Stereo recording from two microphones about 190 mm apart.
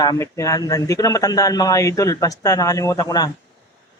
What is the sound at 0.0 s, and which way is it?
A man's voice, 15° left (ahead or behind).